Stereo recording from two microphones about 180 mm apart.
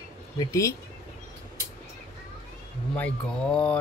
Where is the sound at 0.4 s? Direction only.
15° left (ahead or behind).